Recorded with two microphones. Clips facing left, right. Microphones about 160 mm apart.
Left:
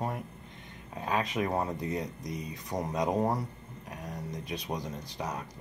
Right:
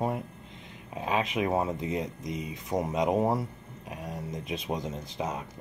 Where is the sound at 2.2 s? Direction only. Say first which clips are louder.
Right 3 dB; 90° right.